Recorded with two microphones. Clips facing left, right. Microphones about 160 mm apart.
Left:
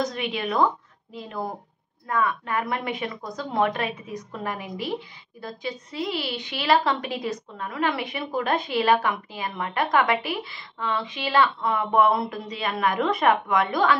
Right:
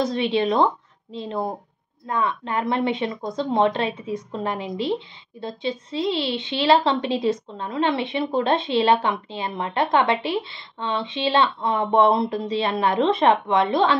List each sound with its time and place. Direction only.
0.0 s a woman's voice: 30° right (ahead or behind)